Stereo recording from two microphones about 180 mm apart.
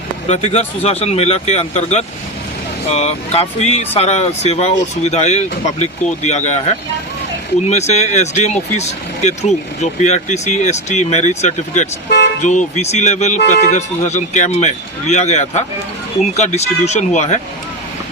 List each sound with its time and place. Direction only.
0.3 s speech: 35° left (ahead or behind)
12.0 s vehicle: 65° left (ahead or behind)
12.4 s speech: 40° left (ahead or behind)